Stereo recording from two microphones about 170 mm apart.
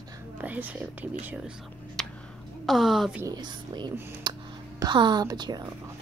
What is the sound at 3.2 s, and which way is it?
Speech, 25° right (ahead or behind).